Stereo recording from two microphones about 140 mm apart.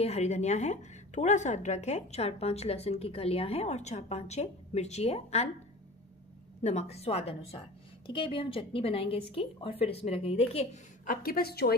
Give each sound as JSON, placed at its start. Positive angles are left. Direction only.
{"t": 0.0, "sound": "a woman's voice", "side_deg": 50}
{"t": 6.6, "sound": "a woman's voice", "side_deg": 50}
{"t": 11.1, "sound": "a woman's voice", "side_deg": 90}